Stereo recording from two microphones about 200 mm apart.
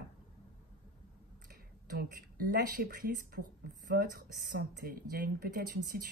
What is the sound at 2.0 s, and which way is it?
Speech, 45° right (ahead or behind).